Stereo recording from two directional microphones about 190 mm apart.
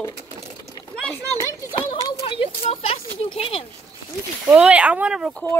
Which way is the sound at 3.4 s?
30° left (ahead or behind).